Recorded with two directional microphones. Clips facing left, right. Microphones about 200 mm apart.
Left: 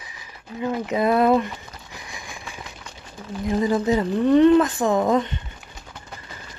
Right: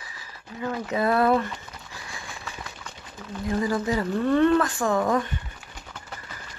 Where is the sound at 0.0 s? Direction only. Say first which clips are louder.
Left 1 dB; 20° left (ahead or behind).